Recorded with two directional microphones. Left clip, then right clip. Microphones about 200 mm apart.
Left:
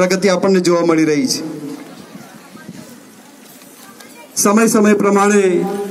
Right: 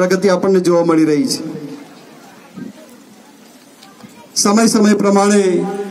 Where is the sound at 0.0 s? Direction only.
50° right (ahead or behind).